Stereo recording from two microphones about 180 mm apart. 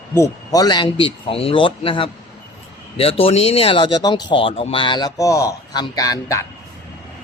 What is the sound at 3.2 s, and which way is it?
Speech, 35° left (ahead or behind).